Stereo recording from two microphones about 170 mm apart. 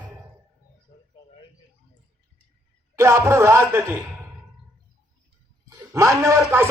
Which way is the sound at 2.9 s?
15° right (ahead or behind).